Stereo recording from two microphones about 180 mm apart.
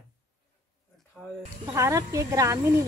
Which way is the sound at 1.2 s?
5° left (ahead or behind).